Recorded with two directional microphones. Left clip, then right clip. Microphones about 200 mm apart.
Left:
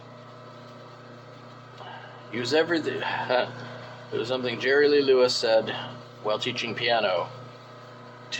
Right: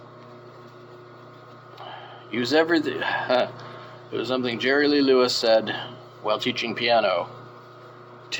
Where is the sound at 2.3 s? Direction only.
45° right (ahead or behind).